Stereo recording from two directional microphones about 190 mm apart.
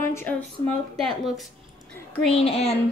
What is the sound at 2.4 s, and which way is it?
Speech, 35° left (ahead or behind).